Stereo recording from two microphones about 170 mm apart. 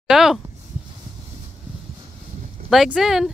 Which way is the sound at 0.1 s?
Centre (ahead or behind).